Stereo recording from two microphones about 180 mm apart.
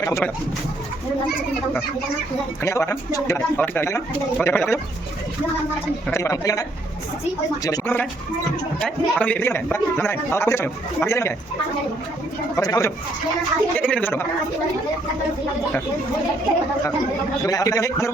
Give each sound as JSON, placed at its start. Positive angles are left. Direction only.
{"t": 0.0, "sound": "speech", "side_deg": 15}
{"t": 2.6, "sound": "a man's voice", "side_deg": 15}
{"t": 6.1, "sound": "a man's voice", "side_deg": 15}
{"t": 12.5, "sound": "speech", "side_deg": 20}
{"t": 13.7, "sound": "a man's voice", "side_deg": 10}
{"t": 17.4, "sound": "a man's voice", "side_deg": 20}